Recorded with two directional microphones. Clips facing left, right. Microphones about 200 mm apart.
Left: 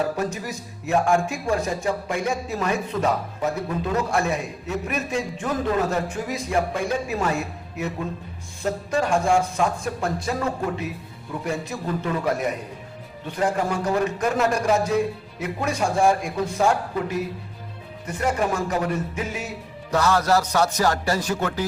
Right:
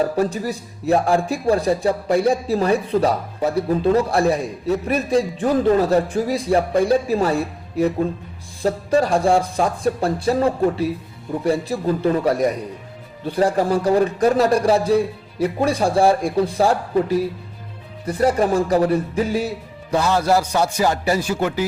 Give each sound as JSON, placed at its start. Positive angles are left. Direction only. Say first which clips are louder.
{"t": 0.2, "sound": "a man's voice", "louder": "right 6 dB", "side_deg": -35}
{"t": 19.9, "sound": "a man's voice", "louder": "right 2 dB", "side_deg": -15}